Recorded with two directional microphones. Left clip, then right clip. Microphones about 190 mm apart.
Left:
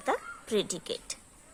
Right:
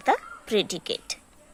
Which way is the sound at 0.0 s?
20° right (ahead or behind).